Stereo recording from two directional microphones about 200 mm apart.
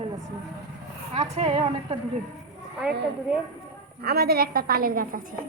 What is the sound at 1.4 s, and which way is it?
Speech, 30° right (ahead or behind).